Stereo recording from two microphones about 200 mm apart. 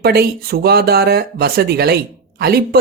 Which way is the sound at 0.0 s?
50° right (ahead or behind).